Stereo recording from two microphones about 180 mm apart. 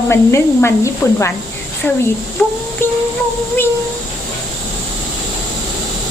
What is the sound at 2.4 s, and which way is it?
Music, 5° left (ahead or behind).